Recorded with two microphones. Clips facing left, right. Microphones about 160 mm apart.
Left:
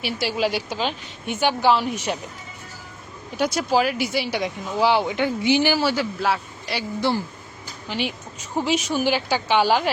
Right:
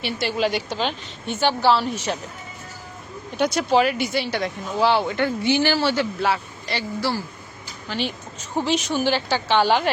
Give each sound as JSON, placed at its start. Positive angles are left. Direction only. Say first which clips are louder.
{"t": 0.0, "sound": "speech", "louder": "even", "side_deg": 10}
{"t": 3.3, "sound": "speech", "louder": "right 2 dB", "side_deg": 5}
{"t": 6.7, "sound": "speech", "louder": "left 2 dB", "side_deg": 20}